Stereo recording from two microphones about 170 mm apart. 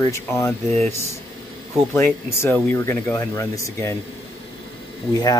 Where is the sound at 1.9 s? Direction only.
15° left (ahead or behind).